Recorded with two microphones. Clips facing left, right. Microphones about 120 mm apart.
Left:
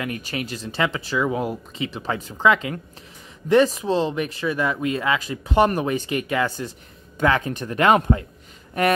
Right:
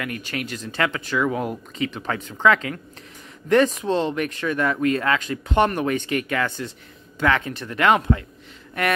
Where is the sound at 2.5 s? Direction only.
25° left (ahead or behind).